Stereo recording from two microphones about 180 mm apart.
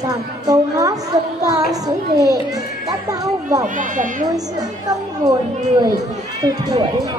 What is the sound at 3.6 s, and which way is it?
Speech, 45° right (ahead or behind).